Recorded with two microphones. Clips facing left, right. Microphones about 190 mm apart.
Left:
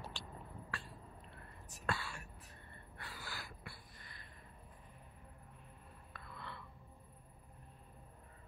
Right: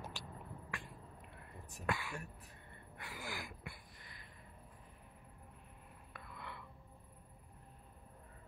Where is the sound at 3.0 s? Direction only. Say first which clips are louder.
Right 4 dB; 15° right (ahead or behind).